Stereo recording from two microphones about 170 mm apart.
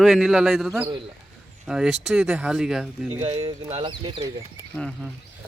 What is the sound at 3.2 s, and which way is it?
Speech, 30° right (ahead or behind).